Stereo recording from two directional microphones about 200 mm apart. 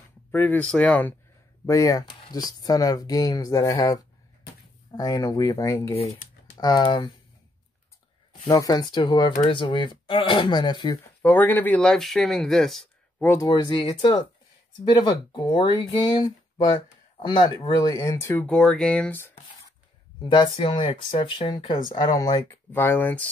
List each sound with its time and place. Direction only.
0.3 s speech: 10° left (ahead or behind)
8.5 s speech: 20° left (ahead or behind)
11.2 s speech: 10° left (ahead or behind)
13.5 s speech: 20° left (ahead or behind)
20.2 s speech: 20° left (ahead or behind)